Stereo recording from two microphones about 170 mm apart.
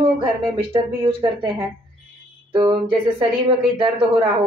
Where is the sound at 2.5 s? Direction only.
30° right (ahead or behind).